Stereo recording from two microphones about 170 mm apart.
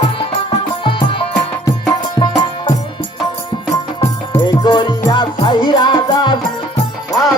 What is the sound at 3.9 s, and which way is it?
Music, 25° left (ahead or behind).